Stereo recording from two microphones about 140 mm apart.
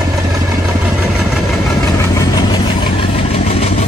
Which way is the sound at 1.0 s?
Centre (ahead or behind).